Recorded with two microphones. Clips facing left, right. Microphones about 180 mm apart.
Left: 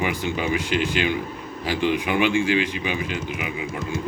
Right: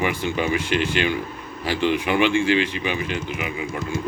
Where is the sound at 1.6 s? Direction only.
15° left (ahead or behind).